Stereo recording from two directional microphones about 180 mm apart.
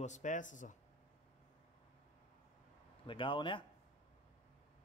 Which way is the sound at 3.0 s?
25° left (ahead or behind).